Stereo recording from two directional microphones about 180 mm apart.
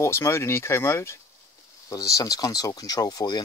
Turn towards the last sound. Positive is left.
turn(degrees=20)  # may be behind; listen again after turning